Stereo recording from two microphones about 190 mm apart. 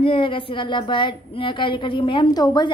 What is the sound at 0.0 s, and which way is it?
A woman's voice, 25° left (ahead or behind).